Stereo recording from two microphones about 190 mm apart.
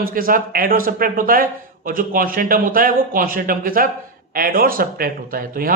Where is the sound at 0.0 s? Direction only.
50° right (ahead or behind).